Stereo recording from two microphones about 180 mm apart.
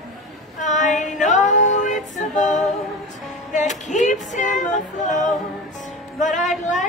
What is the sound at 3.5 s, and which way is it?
Music, 40° left (ahead or behind).